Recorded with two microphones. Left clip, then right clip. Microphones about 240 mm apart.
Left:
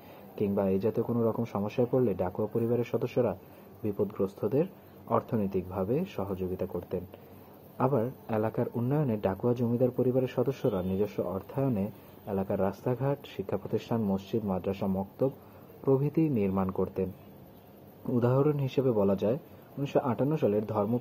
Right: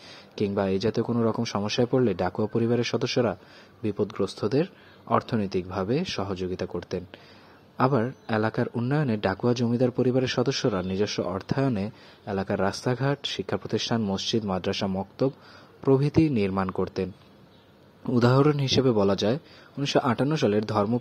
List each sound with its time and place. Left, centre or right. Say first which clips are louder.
0.4 s a man's voice: right 3 dB; right